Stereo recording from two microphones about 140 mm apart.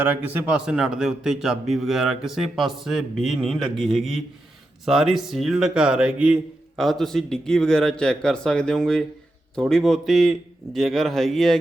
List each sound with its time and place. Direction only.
0.0 s a man's voice: 10° right (ahead or behind)